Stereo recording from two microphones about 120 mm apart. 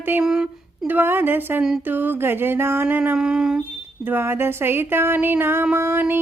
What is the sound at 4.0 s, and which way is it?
Speech, 20° right (ahead or behind).